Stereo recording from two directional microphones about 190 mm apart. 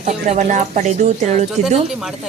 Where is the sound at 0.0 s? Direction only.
40° right (ahead or behind).